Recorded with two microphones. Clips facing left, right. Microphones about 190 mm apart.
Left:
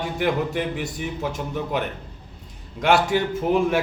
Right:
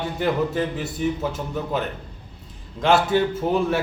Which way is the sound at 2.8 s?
15° left (ahead or behind).